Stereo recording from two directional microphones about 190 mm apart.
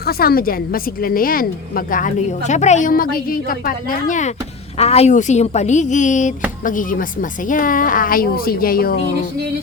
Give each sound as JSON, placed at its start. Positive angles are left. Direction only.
{"t": 0.0, "sound": "a woman's voice", "side_deg": 55}